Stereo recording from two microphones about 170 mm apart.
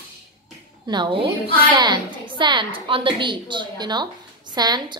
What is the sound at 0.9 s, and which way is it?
A woman's voice, 30° right (ahead or behind).